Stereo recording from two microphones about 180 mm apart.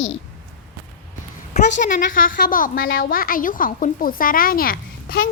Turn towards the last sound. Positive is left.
turn(degrees=55)  # may be behind; listen again after turning